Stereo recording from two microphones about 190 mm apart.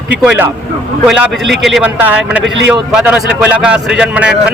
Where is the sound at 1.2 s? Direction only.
Centre (ahead or behind).